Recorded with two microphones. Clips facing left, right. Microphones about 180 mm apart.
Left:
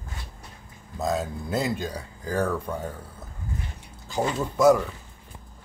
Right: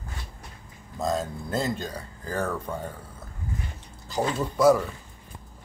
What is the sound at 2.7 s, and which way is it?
Speech, centre (ahead or behind).